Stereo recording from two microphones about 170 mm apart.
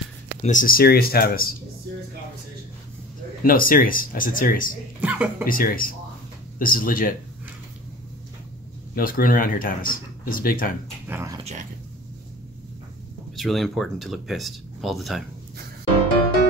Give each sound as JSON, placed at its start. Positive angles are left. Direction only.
{"t": 0.4, "sound": "speech", "side_deg": 50}
{"t": 3.4, "sound": "speech", "side_deg": 55}
{"t": 5.0, "sound": "speech", "side_deg": -10}
{"t": 5.5, "sound": "speech", "side_deg": 55}
{"t": 8.9, "sound": "speech", "side_deg": 55}
{"t": 11.1, "sound": "speech", "side_deg": -15}
{"t": 13.4, "sound": "speech", "side_deg": 0}